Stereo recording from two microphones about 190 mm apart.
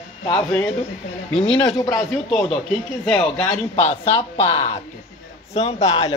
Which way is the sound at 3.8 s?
30° left (ahead or behind).